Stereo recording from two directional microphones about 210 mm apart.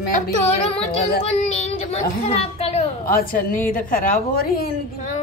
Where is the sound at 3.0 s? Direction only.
40° left (ahead or behind).